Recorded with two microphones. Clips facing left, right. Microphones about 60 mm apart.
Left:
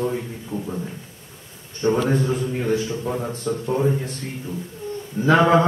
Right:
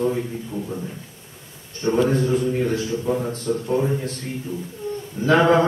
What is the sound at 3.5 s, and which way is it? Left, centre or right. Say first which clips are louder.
Mantra: right 1 dB; left.